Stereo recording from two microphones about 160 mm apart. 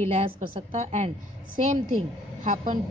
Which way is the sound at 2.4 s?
50° right (ahead or behind).